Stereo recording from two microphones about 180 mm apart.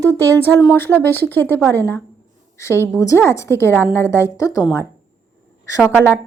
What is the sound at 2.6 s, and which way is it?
Speech, 15° left (ahead or behind).